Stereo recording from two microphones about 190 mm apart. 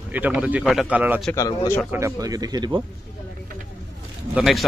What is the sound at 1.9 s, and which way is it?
Speech, 15° right (ahead or behind).